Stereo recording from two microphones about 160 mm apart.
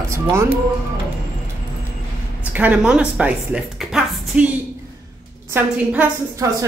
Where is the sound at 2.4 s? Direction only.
10° right (ahead or behind).